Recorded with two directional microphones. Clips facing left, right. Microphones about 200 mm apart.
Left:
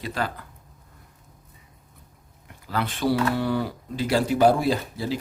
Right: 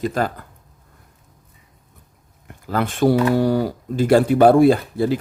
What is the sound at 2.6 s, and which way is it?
Speech, 50° right (ahead or behind).